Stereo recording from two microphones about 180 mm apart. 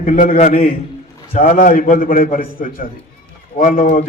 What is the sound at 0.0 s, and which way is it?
A man's voice, 50° left (ahead or behind).